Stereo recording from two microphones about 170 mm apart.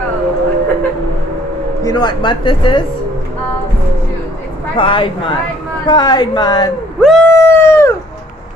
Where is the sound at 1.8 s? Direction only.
25° left (ahead or behind).